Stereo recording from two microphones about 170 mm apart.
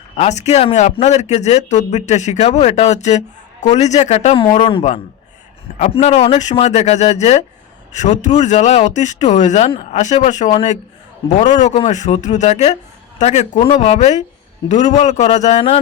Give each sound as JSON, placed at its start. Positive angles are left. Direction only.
{"t": 0.2, "sound": "speech", "side_deg": 40}